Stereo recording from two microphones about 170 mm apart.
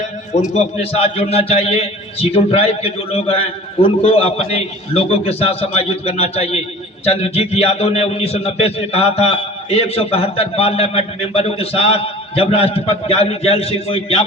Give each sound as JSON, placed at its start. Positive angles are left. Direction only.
{"t": 0.9, "sound": "a man's voice", "side_deg": 35}